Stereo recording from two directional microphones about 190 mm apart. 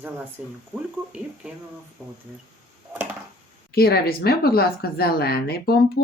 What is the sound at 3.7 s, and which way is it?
A woman's voice, 55° left (ahead or behind).